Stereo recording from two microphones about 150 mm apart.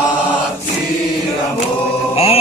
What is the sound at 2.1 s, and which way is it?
Mantra, 40° left (ahead or behind).